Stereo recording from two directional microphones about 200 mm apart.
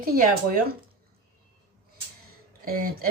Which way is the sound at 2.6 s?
45° right (ahead or behind).